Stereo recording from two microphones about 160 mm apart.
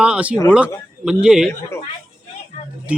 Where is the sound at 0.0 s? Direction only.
5° right (ahead or behind).